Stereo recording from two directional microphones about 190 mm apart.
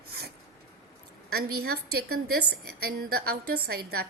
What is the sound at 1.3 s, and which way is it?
A woman's voice, 55° right (ahead or behind).